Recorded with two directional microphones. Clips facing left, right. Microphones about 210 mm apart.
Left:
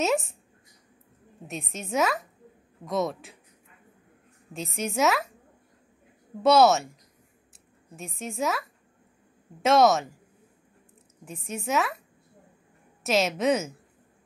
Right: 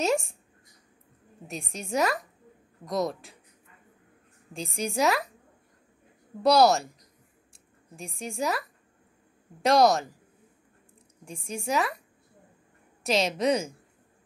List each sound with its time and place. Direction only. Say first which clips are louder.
0.0 s a woman's voice: left 1 dB; centre (ahead or behind)
1.5 s a woman's voice: even; centre (ahead or behind)
4.6 s a woman's voice: left 1 dB; centre (ahead or behind)
6.4 s a woman's voice: left 1 dB; centre (ahead or behind)
11.2 s a woman's voice: even; 5° left (ahead or behind)
13.0 s a woman's voice: left 1 dB; 5° left (ahead or behind)